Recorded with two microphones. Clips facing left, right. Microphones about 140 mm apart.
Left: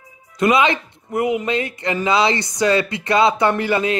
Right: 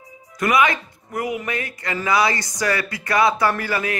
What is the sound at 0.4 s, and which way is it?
Speech, 25° left (ahead or behind).